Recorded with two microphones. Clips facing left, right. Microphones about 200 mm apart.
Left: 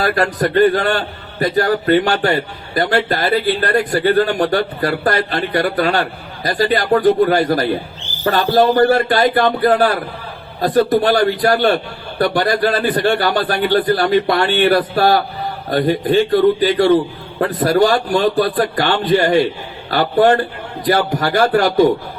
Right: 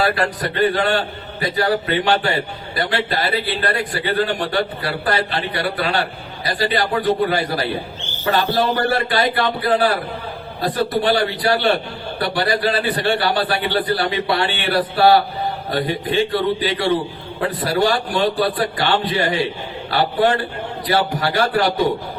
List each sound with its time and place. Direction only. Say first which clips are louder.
0.0 s a man's voice: left 3 dB; 45° left (ahead or behind)
7.9 s a sound: left 7 dB; 35° left (ahead or behind)
8.4 s a man's voice: left 6 dB; 35° left (ahead or behind)
8.9 s a man's voice: left 5 dB; 45° left (ahead or behind)